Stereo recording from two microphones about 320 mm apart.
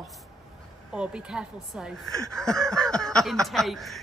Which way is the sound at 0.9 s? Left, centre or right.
Centre.